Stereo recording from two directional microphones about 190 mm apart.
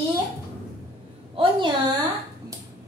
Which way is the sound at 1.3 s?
25° right (ahead or behind).